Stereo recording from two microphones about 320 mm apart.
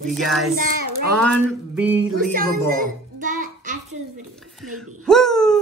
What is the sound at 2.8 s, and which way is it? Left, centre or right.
Child singing, right.